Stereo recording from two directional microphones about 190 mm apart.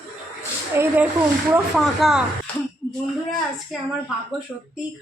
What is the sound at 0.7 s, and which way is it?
Speech, 10° right (ahead or behind).